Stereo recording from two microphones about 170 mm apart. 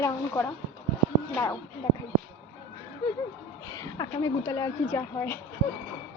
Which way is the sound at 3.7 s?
20° left (ahead or behind).